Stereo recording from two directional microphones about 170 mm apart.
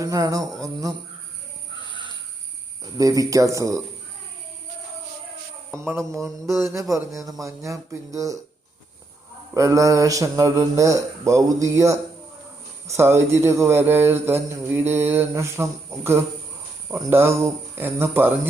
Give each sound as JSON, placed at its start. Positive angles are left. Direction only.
{"t": 0.0, "sound": "speech", "side_deg": -20}
{"t": 1.9, "sound": "a sound", "side_deg": -30}
{"t": 3.0, "sound": "speech", "side_deg": -20}
{"t": 5.7, "sound": "speech", "side_deg": -15}
{"t": 9.6, "sound": "speech", "side_deg": -20}